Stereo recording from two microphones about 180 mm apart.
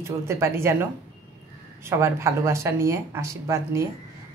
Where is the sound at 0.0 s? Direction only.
15° right (ahead or behind).